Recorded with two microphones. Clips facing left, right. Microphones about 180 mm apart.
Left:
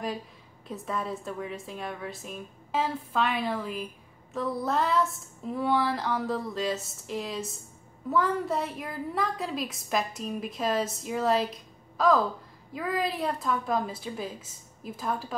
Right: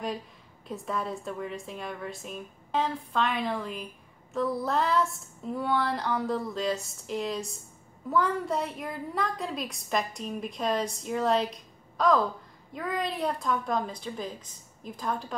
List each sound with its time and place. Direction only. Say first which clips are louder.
0.7 s a woman's voice: even; centre (ahead or behind)